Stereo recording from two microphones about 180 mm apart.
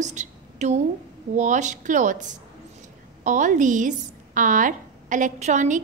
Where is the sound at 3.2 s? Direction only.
45° right (ahead or behind).